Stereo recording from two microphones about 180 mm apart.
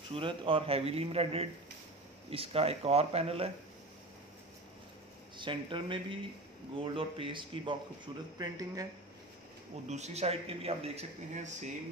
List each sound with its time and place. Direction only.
0.1 s speech: 30° right (ahead or behind)
5.4 s speech: 25° right (ahead or behind)
9.8 s speech: 40° right (ahead or behind)